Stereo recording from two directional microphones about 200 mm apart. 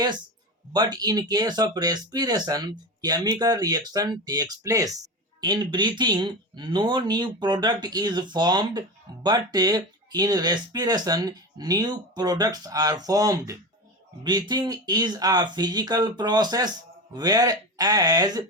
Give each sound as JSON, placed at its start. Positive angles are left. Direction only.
{"t": 0.7, "sound": "speech", "side_deg": -20}